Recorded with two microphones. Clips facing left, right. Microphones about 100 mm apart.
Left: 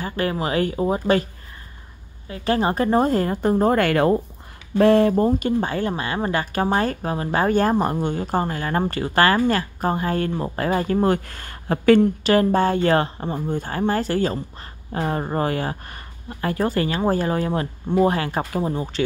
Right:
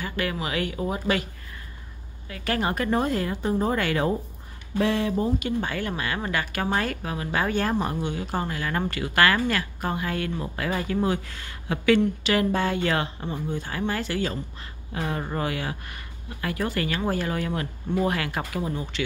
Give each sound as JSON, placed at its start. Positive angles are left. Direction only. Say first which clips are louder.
{"t": 0.0, "sound": "speech", "louder": "left 5 dB", "side_deg": 35}
{"t": 2.2, "sound": "speech", "louder": "left 6 dB", "side_deg": 30}
{"t": 4.7, "sound": "speech", "louder": "left 9 dB", "side_deg": 50}
{"t": 5.6, "sound": "speech", "louder": "left 5 dB", "side_deg": 30}